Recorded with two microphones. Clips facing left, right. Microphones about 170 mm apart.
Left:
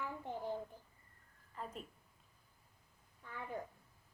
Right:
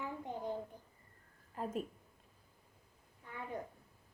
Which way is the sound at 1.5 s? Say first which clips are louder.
Right 8 dB; 45° right (ahead or behind).